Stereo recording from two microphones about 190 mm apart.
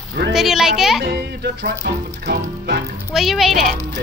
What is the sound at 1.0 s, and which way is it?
Speech, 60° right (ahead or behind).